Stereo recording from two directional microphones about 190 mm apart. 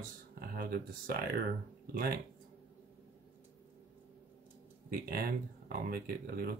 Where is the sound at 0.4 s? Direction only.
50° right (ahead or behind).